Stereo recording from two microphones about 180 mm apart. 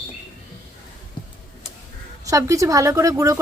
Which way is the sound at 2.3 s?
20° right (ahead or behind).